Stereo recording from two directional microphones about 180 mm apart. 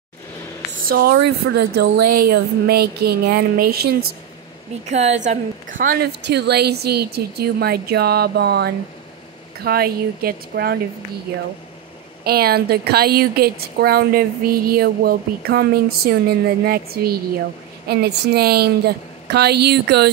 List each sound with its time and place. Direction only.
0.8 s a woman's voice: 60° right (ahead or behind)
4.8 s a woman's voice: 40° right (ahead or behind)
5.8 s a woman's voice: 55° right (ahead or behind)
12.3 s a woman's voice: 60° right (ahead or behind)